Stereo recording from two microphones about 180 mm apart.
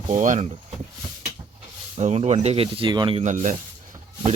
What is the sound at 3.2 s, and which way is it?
Speech, 45° right (ahead or behind).